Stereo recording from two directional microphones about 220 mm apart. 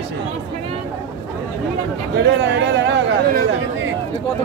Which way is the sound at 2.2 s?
50° right (ahead or behind).